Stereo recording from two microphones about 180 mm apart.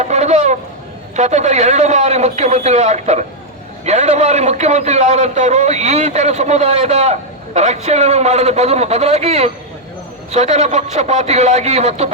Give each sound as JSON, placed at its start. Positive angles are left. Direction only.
{"t": 0.0, "sound": "fowl", "side_deg": -40}
{"t": 1.1, "sound": "a man's voice", "side_deg": -40}